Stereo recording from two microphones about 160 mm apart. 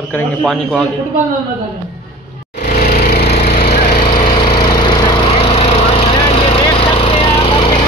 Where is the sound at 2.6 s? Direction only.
70° left (ahead or behind).